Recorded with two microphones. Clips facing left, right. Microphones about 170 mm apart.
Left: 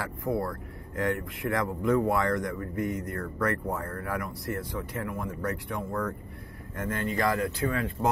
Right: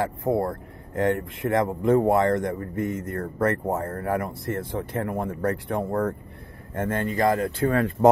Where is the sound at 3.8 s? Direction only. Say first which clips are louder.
Right 6 dB; 45° right (ahead or behind).